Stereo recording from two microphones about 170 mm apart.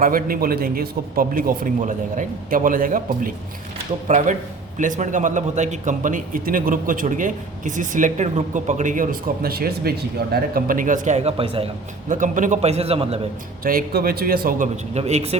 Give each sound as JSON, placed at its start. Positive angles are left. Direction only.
{"t": 0.0, "sound": "a man's voice", "side_deg": -55}
{"t": 4.1, "sound": "a man's voice", "side_deg": -40}
{"t": 12.0, "sound": "a man's voice", "side_deg": -50}
{"t": 13.7, "sound": "a man's voice", "side_deg": -60}
{"t": 14.9, "sound": "speech", "side_deg": -40}